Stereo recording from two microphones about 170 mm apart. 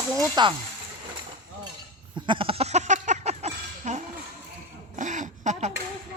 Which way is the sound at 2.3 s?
30° right (ahead or behind).